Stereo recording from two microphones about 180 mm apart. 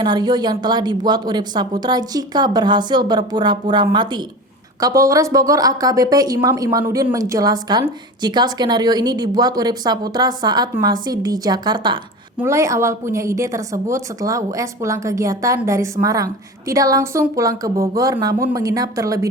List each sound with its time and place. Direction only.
0.0 s a woman's voice: 25° right (ahead or behind)